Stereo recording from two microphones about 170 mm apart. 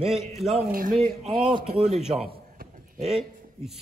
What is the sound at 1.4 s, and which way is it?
Speech, 35° right (ahead or behind).